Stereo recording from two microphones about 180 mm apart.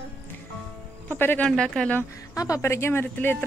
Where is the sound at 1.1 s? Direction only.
10° left (ahead or behind).